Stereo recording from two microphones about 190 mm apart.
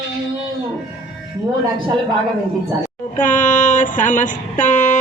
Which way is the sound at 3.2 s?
40° left (ahead or behind).